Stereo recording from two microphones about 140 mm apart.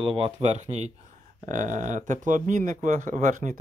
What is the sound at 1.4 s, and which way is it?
Speech, 65° right (ahead or behind).